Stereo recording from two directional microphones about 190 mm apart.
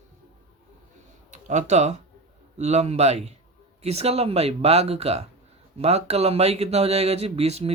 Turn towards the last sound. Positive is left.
turn(degrees=-35)  # may be behind; listen again after turning